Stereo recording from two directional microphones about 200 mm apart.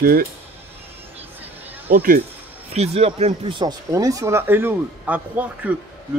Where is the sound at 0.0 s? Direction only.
50° right (ahead or behind).